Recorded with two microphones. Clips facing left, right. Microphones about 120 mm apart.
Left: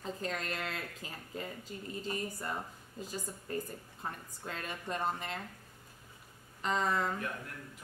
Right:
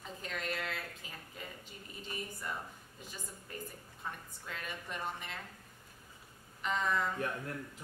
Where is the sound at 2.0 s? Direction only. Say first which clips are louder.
Left 3 dB; 35° left (ahead or behind).